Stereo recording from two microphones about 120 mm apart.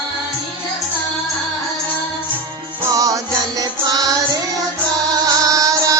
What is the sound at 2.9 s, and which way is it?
Music, 30° right (ahead or behind).